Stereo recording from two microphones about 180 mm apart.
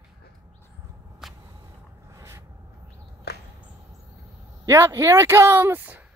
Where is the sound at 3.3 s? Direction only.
65° left (ahead or behind).